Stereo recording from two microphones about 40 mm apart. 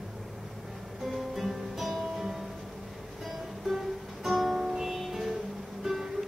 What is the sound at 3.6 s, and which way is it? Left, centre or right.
Music, centre.